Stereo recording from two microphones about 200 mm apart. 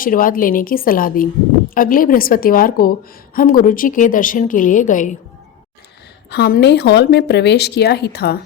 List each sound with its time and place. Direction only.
0.0 s a woman's voice: 45° left (ahead or behind)
6.3 s speech: 55° left (ahead or behind)